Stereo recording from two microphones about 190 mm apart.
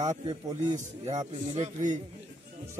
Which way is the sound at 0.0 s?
40° right (ahead or behind).